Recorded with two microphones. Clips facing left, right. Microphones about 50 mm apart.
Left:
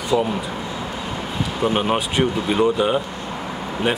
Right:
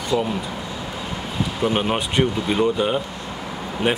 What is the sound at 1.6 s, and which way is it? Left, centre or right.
Speech, centre.